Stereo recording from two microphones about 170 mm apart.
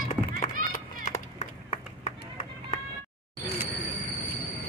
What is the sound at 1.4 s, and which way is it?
Run, 45° left (ahead or behind).